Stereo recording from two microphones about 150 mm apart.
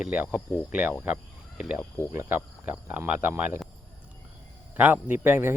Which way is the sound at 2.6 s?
10° right (ahead or behind).